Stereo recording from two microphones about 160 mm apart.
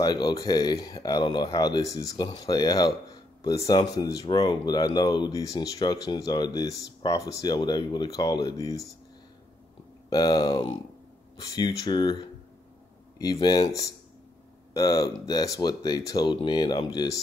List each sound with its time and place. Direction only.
0.0 s speech: 25° left (ahead or behind)
10.0 s speech: 25° left (ahead or behind)
13.2 s speech: 25° left (ahead or behind)